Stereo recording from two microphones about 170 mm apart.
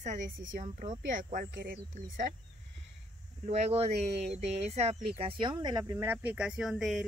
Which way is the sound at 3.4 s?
40° right (ahead or behind).